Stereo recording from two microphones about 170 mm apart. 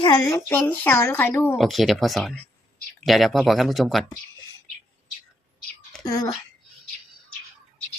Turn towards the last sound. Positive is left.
turn(degrees=20)  # may be behind; listen again after turning